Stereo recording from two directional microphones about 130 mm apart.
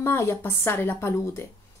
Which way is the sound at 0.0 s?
20° left (ahead or behind).